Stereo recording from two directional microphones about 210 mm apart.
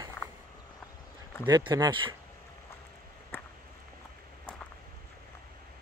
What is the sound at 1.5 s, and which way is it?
Speech, 20° right (ahead or behind).